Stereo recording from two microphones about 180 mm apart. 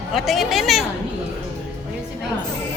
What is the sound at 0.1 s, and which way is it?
Speech, centre (ahead or behind).